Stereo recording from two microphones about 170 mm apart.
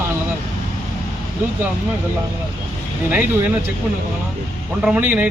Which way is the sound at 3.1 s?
10° right (ahead or behind).